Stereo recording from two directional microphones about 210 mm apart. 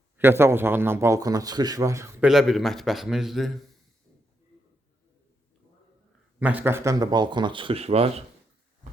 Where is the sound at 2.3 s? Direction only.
Centre (ahead or behind).